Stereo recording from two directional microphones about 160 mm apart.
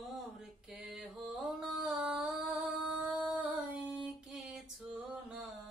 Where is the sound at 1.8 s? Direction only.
Centre (ahead or behind).